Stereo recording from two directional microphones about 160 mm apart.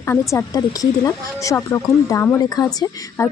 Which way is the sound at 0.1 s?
20° left (ahead or behind).